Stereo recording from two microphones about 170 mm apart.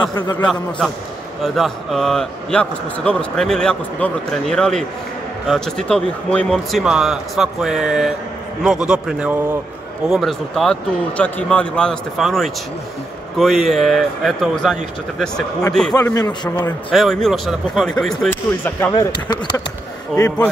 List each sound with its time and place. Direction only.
0.0 s a man's voice: 25° left (ahead or behind)
0.5 s a man's voice: centre (ahead or behind)
15.9 s a man's voice: 20° left (ahead or behind)
16.9 s a man's voice: centre (ahead or behind)
20.2 s a man's voice: 20° left (ahead or behind)